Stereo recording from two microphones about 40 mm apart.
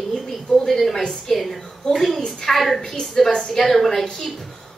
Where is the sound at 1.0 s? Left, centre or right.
Centre.